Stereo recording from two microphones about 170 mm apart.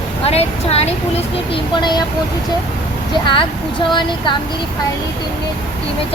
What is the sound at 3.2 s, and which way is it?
Speech, 30° left (ahead or behind).